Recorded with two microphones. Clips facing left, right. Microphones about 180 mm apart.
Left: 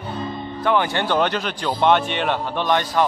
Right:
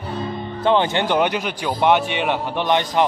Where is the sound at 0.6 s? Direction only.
25° right (ahead or behind).